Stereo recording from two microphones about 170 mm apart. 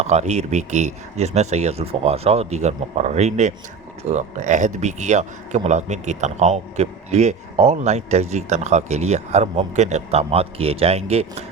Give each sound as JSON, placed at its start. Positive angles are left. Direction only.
{"t": 0.0, "sound": "a man's voice", "side_deg": -40}